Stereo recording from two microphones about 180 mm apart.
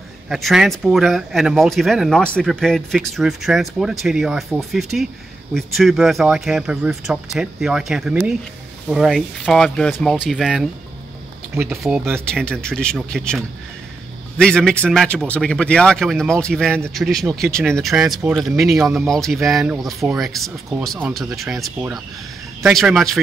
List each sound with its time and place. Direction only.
0.3 s speech: centre (ahead or behind)
11.7 s speech: centre (ahead or behind)
14.4 s speech: 5° left (ahead or behind)